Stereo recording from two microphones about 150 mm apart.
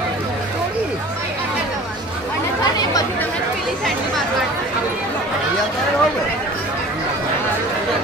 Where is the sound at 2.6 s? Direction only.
25° left (ahead or behind).